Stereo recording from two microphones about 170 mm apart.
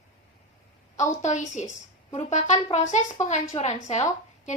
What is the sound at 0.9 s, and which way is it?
A woman's voice, 45° left (ahead or behind).